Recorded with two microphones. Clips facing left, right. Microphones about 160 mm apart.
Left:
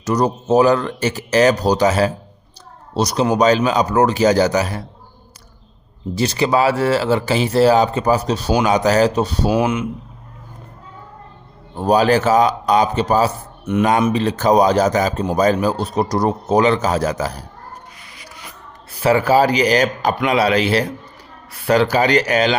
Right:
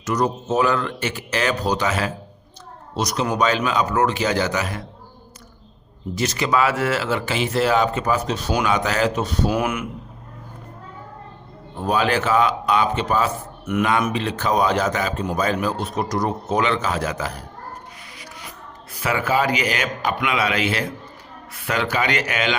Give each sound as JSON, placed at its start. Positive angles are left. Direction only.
{"t": 0.0, "sound": "speech", "side_deg": 35}
{"t": 6.1, "sound": "speech", "side_deg": 30}
{"t": 11.8, "sound": "speech", "side_deg": 40}
{"t": 18.9, "sound": "speech", "side_deg": 35}